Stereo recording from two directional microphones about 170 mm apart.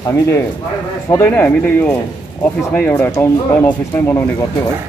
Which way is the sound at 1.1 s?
10° left (ahead or behind).